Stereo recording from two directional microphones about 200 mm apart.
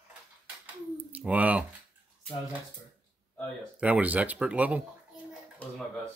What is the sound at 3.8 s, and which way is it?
Speech, 5° right (ahead or behind).